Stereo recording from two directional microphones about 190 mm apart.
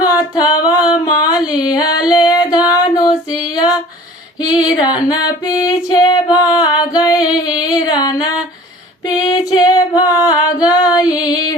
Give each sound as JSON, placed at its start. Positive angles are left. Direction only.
{"t": 0.0, "sound": "a sound", "side_deg": 20}
{"t": 1.5, "sound": "female singing", "side_deg": 20}
{"t": 4.6, "sound": "female singing", "side_deg": 20}